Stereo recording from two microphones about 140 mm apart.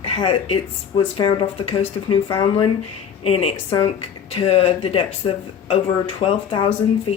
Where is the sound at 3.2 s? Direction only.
45° left (ahead or behind).